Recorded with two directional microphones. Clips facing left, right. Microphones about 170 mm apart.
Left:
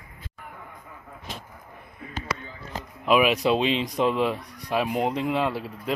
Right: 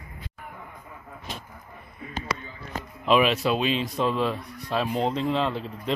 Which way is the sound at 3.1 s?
10° left (ahead or behind).